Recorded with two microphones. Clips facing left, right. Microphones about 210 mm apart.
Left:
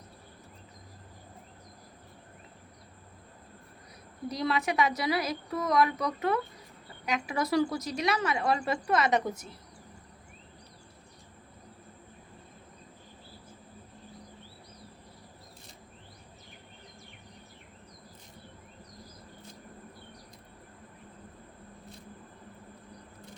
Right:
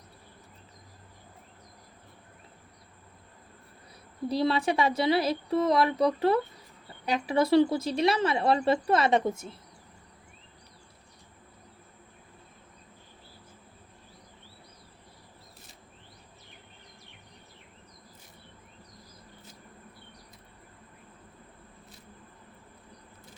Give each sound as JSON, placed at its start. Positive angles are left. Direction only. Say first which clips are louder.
{"t": 4.3, "sound": "a woman's voice", "louder": "right 4 dB", "side_deg": -30}